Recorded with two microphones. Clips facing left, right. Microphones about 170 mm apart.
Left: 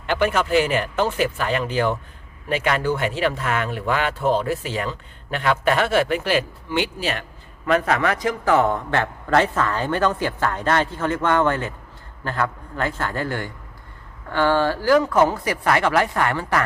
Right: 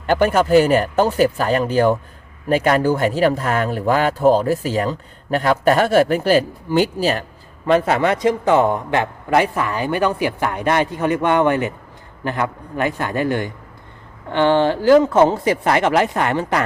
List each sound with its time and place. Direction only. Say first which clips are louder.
0.0 s a man's voice: right 5 dB; 40° right (ahead or behind); by 16.6 s 20° right (ahead or behind)